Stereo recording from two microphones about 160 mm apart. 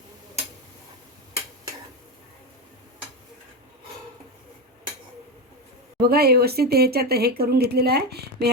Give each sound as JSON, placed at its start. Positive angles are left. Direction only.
{"t": 6.0, "sound": "speech", "side_deg": -80}